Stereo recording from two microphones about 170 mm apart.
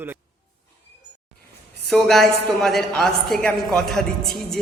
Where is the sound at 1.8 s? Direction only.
Centre (ahead or behind).